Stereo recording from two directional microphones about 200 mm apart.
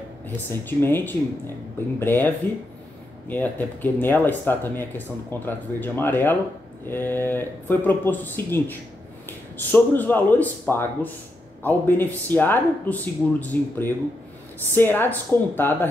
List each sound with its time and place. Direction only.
0.5 s speech: 10° left (ahead or behind)